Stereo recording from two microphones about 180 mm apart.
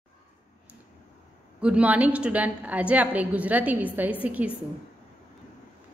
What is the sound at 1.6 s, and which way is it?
A woman's voice, 5° right (ahead or behind).